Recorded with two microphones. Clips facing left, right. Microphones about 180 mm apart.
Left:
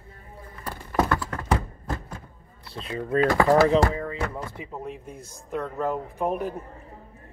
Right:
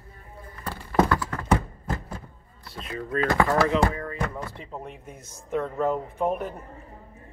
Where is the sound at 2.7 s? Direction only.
30° left (ahead or behind).